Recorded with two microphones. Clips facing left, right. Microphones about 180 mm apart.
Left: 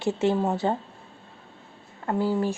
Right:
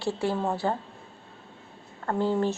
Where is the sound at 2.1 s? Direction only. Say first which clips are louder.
Left 1 dB; 10° left (ahead or behind).